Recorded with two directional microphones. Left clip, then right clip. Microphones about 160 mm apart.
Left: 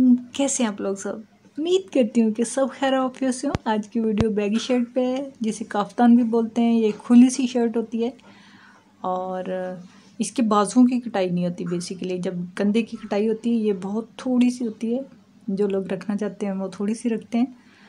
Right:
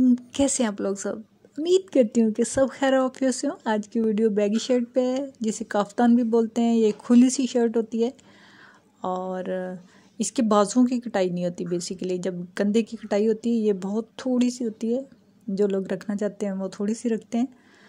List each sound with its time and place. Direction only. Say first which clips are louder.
0.3 s a woman's voice: even; 30° right (ahead or behind)